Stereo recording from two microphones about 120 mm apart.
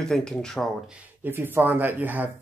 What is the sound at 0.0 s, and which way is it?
Speech, 5° left (ahead or behind).